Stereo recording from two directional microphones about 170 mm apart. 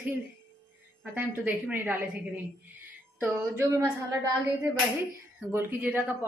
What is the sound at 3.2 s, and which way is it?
Speech, 15° right (ahead or behind).